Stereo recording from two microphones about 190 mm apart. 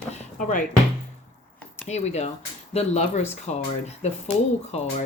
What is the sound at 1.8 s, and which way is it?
Speech, 35° left (ahead or behind).